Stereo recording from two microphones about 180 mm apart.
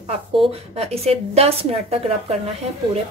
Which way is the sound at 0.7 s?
35° right (ahead or behind).